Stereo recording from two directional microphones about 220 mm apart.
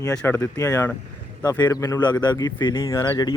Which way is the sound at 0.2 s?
10° left (ahead or behind).